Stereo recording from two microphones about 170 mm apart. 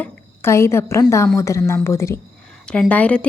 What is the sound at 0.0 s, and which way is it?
A woman's voice, 15° left (ahead or behind).